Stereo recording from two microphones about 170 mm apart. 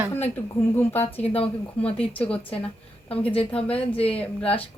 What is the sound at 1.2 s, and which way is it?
Speech, 35° left (ahead or behind).